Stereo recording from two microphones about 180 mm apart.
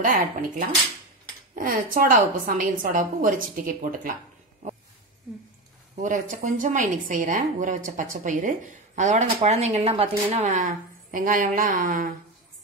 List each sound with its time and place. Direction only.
0.0 s a woman's voice: 50° right (ahead or behind)
6.0 s a woman's voice: 45° right (ahead or behind)